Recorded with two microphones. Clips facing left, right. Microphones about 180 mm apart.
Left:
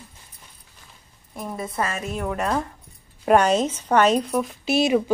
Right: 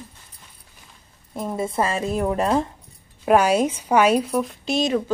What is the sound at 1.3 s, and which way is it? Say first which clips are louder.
A woman's voice: right 5 dB; 25° right (ahead or behind).